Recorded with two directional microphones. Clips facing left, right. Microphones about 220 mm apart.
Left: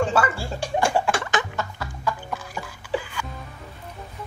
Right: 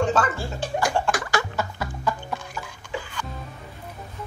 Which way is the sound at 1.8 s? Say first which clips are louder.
Right 3 dB; 20° right (ahead or behind).